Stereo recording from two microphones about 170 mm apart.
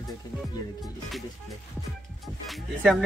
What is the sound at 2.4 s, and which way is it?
Speech, centre (ahead or behind).